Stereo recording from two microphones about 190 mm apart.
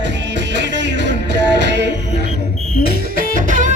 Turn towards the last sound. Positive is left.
turn(degrees=-45)  # may be behind; listen again after turning